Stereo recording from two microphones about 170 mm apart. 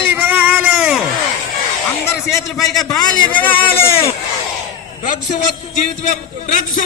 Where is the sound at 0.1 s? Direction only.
10° right (ahead or behind).